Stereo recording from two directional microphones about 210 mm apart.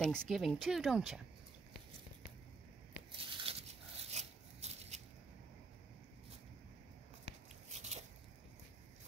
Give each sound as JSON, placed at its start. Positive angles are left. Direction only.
{"t": 0.0, "sound": "speech", "side_deg": 0}
{"t": 3.2, "sound": "a sound", "side_deg": -25}
{"t": 4.1, "sound": "scissors", "side_deg": -30}